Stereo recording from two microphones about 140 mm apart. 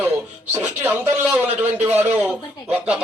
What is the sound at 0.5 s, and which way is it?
A man's voice, 10° right (ahead or behind).